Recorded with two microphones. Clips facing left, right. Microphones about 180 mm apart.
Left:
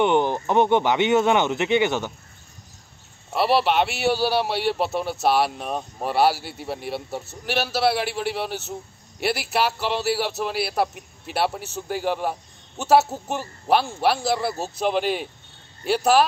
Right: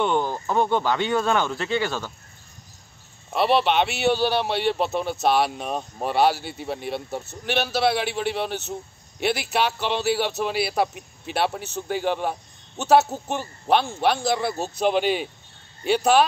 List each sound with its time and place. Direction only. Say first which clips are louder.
0.0 s speech: left 3 dB; 20° left (ahead or behind)
3.3 s speech: even; 5° left (ahead or behind)